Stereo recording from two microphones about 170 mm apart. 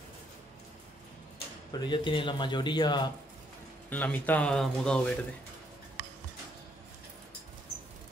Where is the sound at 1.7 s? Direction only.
25° left (ahead or behind).